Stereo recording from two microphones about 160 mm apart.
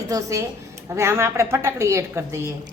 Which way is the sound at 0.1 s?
20° right (ahead or behind).